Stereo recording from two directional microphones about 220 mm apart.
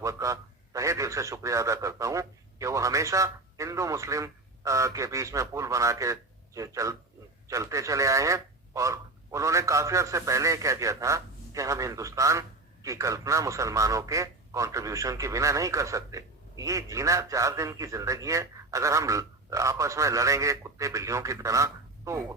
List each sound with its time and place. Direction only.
0.0 s a man's voice: 15° right (ahead or behind)